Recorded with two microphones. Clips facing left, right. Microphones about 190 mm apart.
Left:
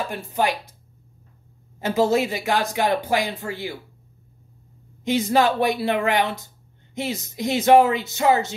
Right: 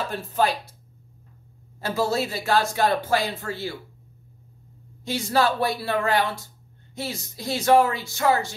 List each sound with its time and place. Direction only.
0.1 s speech: 15° left (ahead or behind)
1.8 s speech: 20° left (ahead or behind)
5.0 s speech: 20° left (ahead or behind)